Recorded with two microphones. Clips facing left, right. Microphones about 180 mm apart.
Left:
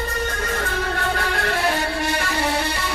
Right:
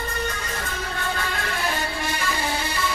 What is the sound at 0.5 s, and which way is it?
Music, 65° left (ahead or behind).